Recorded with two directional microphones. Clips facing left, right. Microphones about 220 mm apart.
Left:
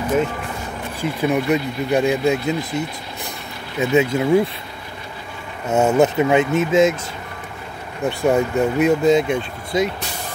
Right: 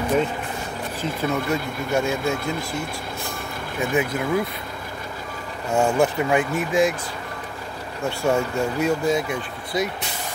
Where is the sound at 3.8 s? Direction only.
25° left (ahead or behind).